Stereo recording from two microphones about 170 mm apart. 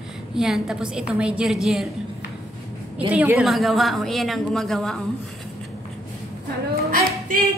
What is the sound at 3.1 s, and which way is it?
A man's voice, 5° right (ahead or behind).